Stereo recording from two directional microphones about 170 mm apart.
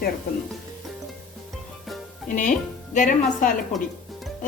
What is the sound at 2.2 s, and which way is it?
A woman's voice, 50° left (ahead or behind).